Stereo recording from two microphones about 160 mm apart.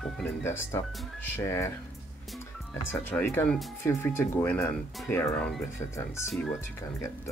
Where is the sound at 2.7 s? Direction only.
15° left (ahead or behind).